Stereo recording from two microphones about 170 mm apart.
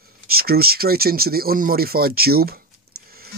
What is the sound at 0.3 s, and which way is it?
Speech, 65° right (ahead or behind).